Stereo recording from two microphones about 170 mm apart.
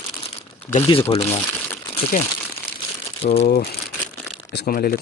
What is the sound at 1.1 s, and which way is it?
Speech, 35° left (ahead or behind).